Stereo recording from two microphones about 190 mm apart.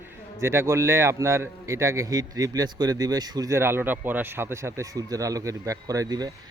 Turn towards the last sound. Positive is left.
turn(degrees=-20)  # may be behind; listen again after turning